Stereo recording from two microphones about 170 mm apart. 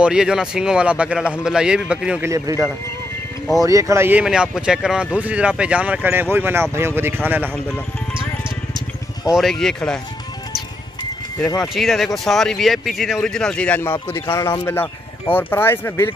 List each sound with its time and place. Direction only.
0.0 s speech: 5° right (ahead or behind)
2.2 s speech: 20° right (ahead or behind)
3.6 s speech: 20° right (ahead or behind)
9.3 s speech: centre (ahead or behind)
11.4 s speech: centre (ahead or behind)